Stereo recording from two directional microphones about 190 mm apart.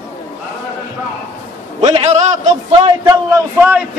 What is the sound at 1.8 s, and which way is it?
Speech, 35° right (ahead or behind).